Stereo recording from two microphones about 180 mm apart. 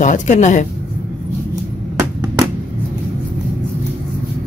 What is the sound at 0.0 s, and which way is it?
Speech, 45° left (ahead or behind).